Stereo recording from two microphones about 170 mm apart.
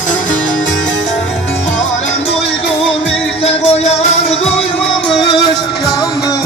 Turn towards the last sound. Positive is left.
turn(degrees=30)  # may be behind; listen again after turning